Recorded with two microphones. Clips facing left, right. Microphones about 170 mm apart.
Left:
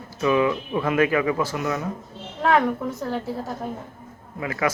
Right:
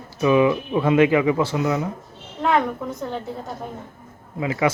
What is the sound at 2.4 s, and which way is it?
Speech, centre (ahead or behind).